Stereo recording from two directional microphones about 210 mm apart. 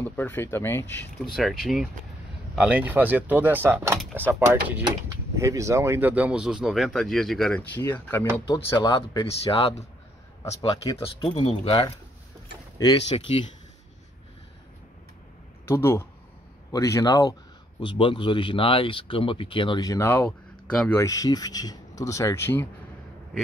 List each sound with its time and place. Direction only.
0.0 s speech: 10° left (ahead or behind)
1.2 s speech: centre (ahead or behind); by 13.2 s 20° left (ahead or behind)
15.6 s speech: 10° left (ahead or behind)